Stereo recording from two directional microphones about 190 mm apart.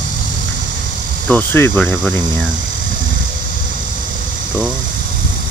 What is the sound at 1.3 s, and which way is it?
Speech, 10° left (ahead or behind).